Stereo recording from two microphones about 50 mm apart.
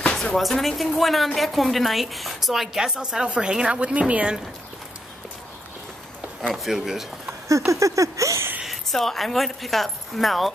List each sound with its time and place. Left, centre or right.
0.4 s a woman's voice: centre
6.5 s a woman's voice: centre
7.4 s a sound: right
8.6 s speech: centre